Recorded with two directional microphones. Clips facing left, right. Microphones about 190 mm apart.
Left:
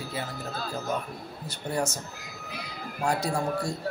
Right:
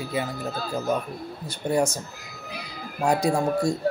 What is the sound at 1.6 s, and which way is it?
Speech, 15° right (ahead or behind).